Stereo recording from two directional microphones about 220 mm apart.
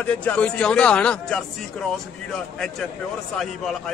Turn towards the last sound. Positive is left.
turn(degrees=0)  # may be behind; listen again after turning